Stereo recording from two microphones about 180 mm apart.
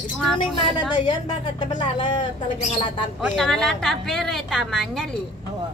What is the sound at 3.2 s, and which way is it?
Speech, centre (ahead or behind).